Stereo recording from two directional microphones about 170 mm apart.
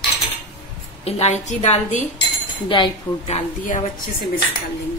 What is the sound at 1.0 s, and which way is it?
A woman's voice, 40° left (ahead or behind).